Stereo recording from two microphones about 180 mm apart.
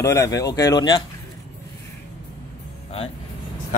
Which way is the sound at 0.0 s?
15° left (ahead or behind).